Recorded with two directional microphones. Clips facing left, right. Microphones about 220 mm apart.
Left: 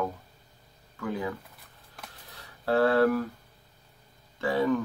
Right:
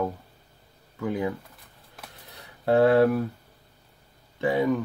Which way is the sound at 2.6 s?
20° right (ahead or behind).